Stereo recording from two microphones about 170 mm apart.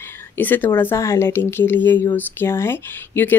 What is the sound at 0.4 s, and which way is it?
Speech, 10° left (ahead or behind).